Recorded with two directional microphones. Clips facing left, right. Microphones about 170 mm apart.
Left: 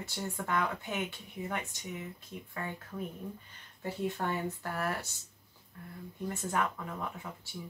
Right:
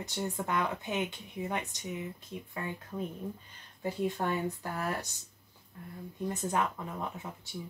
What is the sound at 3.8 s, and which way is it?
A woman's voice, 15° right (ahead or behind).